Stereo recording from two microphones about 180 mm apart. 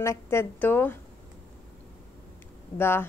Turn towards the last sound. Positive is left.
turn(degrees=15)  # may be behind; listen again after turning